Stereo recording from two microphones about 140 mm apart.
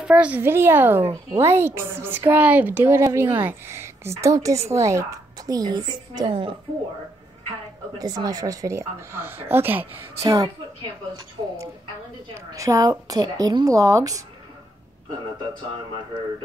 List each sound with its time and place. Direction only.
0.0 s a woman's voice: 10° right (ahead or behind); by 6.5 s 35° right (ahead or behind)
8.0 s a woman's voice: 25° right (ahead or behind)
10.2 s a woman's voice: 25° right (ahead or behind)
12.5 s a woman's voice: 25° right (ahead or behind)